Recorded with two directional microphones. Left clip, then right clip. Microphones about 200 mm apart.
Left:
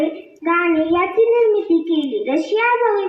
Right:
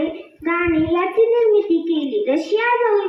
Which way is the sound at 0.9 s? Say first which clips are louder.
Left 1 dB; 15° left (ahead or behind).